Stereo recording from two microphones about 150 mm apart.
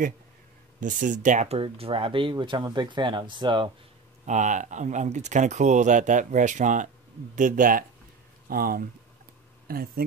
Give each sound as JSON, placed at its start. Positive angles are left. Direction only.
{"t": 0.7, "sound": "speech", "side_deg": -60}
{"t": 4.3, "sound": "speech", "side_deg": -55}
{"t": 8.5, "sound": "speech", "side_deg": -75}
{"t": 9.7, "sound": "speech", "side_deg": -85}